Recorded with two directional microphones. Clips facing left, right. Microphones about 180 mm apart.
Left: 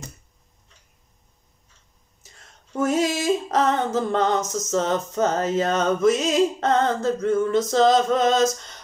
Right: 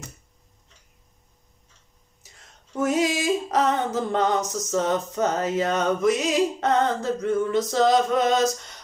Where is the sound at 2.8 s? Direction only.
15° right (ahead or behind).